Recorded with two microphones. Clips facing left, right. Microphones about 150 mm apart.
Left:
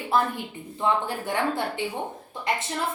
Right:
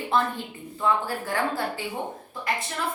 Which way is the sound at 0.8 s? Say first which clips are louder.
Even; 20° left (ahead or behind).